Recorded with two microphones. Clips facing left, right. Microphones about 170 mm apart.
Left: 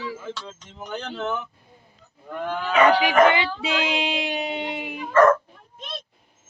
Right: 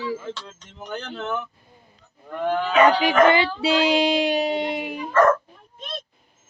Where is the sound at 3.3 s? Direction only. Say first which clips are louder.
Right 4 dB; 35° right (ahead or behind).